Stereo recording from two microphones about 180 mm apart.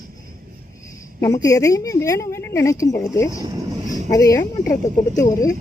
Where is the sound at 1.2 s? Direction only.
20° left (ahead or behind).